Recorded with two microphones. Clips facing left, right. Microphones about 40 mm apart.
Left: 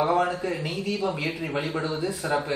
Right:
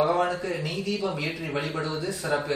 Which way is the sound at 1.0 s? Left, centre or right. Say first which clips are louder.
Left 2 dB; centre.